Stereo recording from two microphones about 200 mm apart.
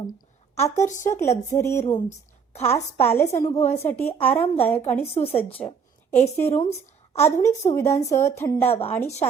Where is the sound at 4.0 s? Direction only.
30° left (ahead or behind).